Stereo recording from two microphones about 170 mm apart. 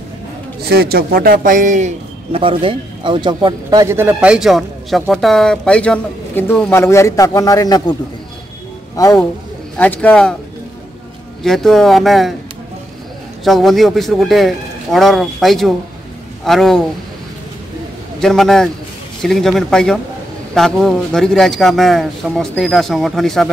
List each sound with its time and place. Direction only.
0.6 s a man's voice: 70° right (ahead or behind); by 7.9 s 20° left (ahead or behind)
8.9 s speech: 20° left (ahead or behind)
9.8 s speech: 10° left (ahead or behind)
11.4 s a man's voice: centre (ahead or behind)
13.4 s a man's voice: centre (ahead or behind)
18.2 s a man's voice: centre (ahead or behind)